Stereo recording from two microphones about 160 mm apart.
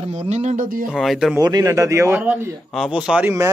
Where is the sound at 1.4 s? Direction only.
20° right (ahead or behind).